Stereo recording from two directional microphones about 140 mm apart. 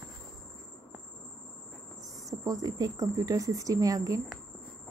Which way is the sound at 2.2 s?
25° right (ahead or behind).